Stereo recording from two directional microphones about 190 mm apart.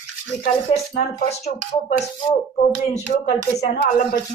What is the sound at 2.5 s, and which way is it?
Speech, 40° left (ahead or behind).